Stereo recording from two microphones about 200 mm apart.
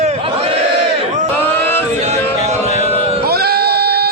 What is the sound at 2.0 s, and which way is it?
Music, 35° right (ahead or behind).